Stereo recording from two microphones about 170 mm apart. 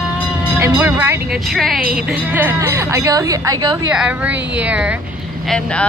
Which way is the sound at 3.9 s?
5° right (ahead or behind).